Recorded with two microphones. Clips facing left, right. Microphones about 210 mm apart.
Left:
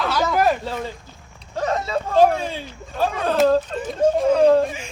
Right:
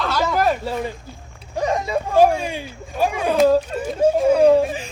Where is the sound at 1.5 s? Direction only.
15° right (ahead or behind).